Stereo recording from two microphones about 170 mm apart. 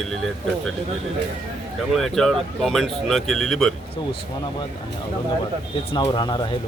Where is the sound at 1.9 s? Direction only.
Centre (ahead or behind).